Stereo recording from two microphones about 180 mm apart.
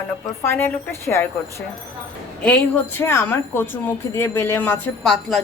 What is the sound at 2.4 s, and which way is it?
Speech, 5° left (ahead or behind).